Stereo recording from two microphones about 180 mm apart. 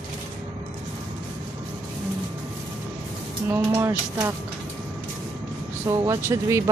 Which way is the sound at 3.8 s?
10° right (ahead or behind).